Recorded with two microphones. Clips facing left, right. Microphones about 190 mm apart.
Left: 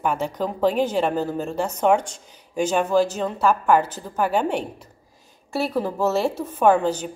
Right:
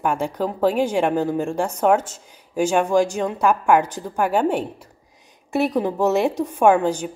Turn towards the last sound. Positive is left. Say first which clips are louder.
# right 2 dB
turn(degrees=-10)  # may be behind; listen again after turning